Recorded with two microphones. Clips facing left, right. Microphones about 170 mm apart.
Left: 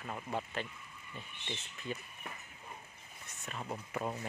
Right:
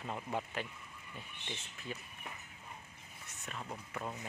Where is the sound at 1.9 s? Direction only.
Centre (ahead or behind).